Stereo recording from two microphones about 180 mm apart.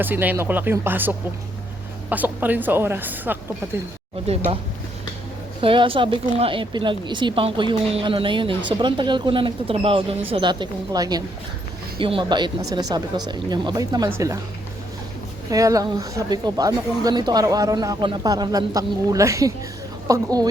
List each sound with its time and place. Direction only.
0.0 s speech: 10° right (ahead or behind)
4.3 s speech: 35° right (ahead or behind)
5.6 s speech: 30° right (ahead or behind)
15.4 s speech: 20° right (ahead or behind)